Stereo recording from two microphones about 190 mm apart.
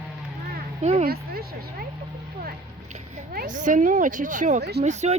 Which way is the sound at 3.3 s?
45° right (ahead or behind).